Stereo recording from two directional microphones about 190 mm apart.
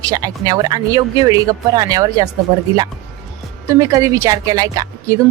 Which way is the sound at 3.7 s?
15° right (ahead or behind).